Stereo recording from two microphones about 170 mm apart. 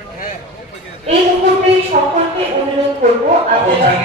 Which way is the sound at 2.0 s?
45° right (ahead or behind).